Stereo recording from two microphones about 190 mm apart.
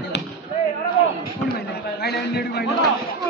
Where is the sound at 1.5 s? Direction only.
55° left (ahead or behind).